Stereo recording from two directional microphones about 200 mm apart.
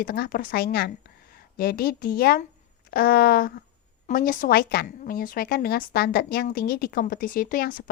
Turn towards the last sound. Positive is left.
turn(degrees=45)  # may be behind; listen again after turning